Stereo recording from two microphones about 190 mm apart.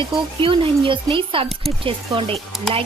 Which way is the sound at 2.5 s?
Centre (ahead or behind).